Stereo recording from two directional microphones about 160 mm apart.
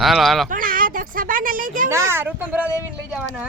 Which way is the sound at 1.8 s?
15° right (ahead or behind).